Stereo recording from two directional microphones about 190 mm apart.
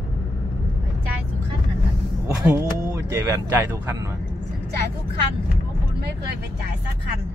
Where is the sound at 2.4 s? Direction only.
15° right (ahead or behind).